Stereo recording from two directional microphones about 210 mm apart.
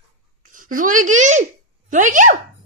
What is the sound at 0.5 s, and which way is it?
A child's voice, 40° right (ahead or behind).